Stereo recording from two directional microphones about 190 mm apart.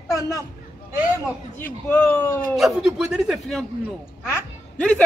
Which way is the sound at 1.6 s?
10° left (ahead or behind).